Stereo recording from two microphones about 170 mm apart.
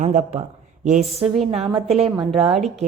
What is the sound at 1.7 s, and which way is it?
Speech, 35° right (ahead or behind).